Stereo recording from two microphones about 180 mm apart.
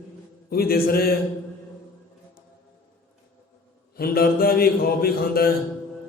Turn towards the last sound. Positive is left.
turn(degrees=55)  # may be behind; listen again after turning